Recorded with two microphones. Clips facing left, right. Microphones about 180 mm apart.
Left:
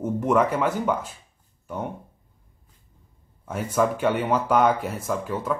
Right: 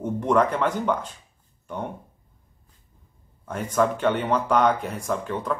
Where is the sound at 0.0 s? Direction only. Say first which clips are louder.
Even; 5° left (ahead or behind).